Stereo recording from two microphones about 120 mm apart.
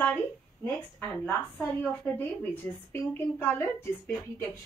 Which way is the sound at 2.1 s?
15° left (ahead or behind).